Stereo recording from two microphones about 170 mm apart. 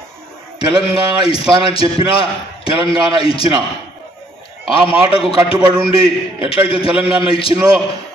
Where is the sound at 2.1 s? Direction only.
30° left (ahead or behind).